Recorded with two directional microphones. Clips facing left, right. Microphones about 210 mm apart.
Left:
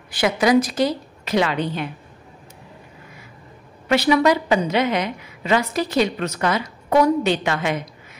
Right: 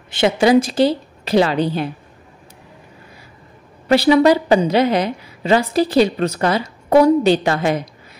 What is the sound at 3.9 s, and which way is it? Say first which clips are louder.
A woman's voice: right 5 dB; 35° right (ahead or behind).